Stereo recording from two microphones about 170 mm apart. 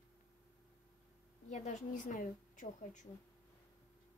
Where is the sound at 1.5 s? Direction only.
45° left (ahead or behind).